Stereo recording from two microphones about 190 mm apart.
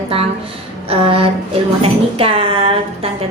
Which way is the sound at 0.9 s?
30° right (ahead or behind).